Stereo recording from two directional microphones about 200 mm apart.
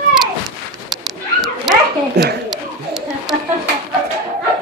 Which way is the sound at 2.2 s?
55° right (ahead or behind).